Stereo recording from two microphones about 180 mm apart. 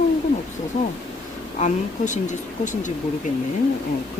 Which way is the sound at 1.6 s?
45° left (ahead or behind).